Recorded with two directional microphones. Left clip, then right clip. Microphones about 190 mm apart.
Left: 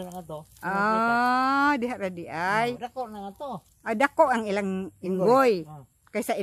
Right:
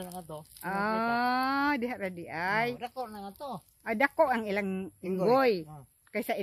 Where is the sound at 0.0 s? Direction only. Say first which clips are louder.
Left 4 dB; 10° right (ahead or behind).